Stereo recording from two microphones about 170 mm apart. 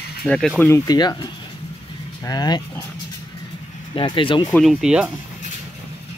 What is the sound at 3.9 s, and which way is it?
Speech, 30° left (ahead or behind).